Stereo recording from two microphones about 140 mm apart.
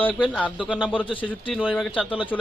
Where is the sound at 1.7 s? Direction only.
5° left (ahead or behind).